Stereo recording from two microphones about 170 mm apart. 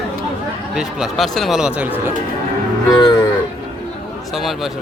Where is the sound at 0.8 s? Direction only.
Centre (ahead or behind).